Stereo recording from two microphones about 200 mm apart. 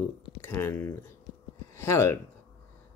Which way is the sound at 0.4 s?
10° left (ahead or behind).